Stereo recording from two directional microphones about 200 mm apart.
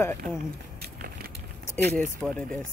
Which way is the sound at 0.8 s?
45° right (ahead or behind).